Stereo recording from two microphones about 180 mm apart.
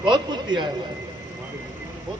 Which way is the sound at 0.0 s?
25° right (ahead or behind).